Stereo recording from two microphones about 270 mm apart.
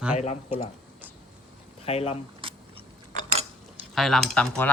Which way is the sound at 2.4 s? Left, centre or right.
Centre.